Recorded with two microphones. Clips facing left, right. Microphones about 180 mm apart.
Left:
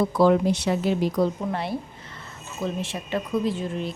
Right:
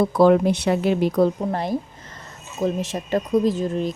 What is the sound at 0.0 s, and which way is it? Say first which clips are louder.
Speech: right 4 dB; 55° right (ahead or behind).